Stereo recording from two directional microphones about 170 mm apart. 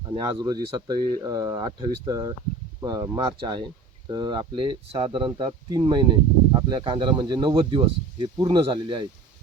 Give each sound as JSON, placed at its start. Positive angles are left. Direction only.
{"t": 0.1, "sound": "speech", "side_deg": -25}